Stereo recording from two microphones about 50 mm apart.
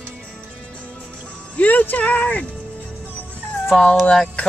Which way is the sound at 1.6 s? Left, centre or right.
Left.